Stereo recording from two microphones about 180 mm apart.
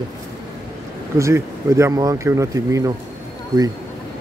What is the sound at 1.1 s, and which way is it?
Speech, 15° right (ahead or behind).